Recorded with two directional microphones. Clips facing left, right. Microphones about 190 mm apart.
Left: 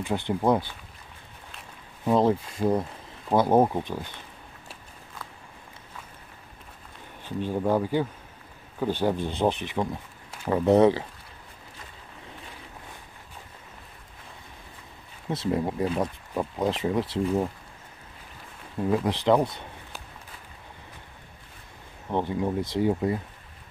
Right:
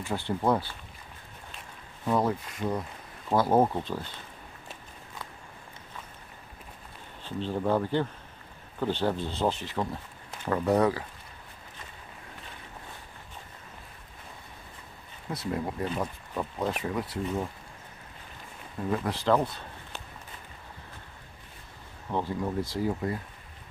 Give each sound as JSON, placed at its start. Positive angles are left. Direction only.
{"t": 0.0, "sound": "speech", "side_deg": 20}
{"t": 2.0, "sound": "speech", "side_deg": 25}
{"t": 3.3, "sound": "speech", "side_deg": 15}
{"t": 7.2, "sound": "speech", "side_deg": 10}
{"t": 15.2, "sound": "speech", "side_deg": 25}
{"t": 18.9, "sound": "speech", "side_deg": 20}
{"t": 22.1, "sound": "speech", "side_deg": 20}